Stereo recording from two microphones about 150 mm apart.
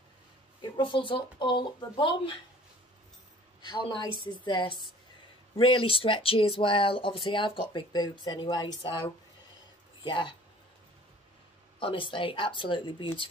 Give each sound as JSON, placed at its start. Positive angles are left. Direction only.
{"t": 0.6, "sound": "speech", "side_deg": 35}
{"t": 3.6, "sound": "a woman's voice", "side_deg": 30}
{"t": 11.8, "sound": "speech", "side_deg": 35}